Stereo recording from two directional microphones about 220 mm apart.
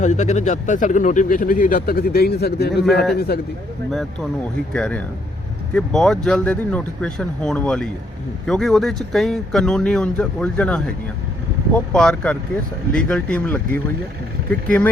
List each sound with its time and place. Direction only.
0.0 s a man's voice: 35° left (ahead or behind)
4.7 s speech: 5° left (ahead or behind)